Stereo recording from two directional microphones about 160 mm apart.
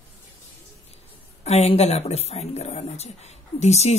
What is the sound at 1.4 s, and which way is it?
Speech, 40° left (ahead or behind).